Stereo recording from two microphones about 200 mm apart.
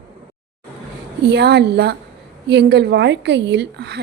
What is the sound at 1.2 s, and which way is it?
A woman's voice, 55° right (ahead or behind).